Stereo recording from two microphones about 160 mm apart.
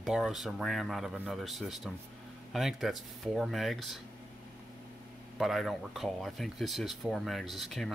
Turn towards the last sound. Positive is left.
turn(degrees=0)  # may be behind; listen again after turning